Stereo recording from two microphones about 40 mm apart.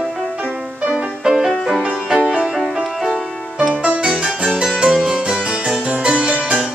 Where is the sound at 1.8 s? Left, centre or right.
Right.